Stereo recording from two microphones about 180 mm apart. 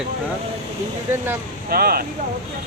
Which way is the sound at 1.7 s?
55° right (ahead or behind).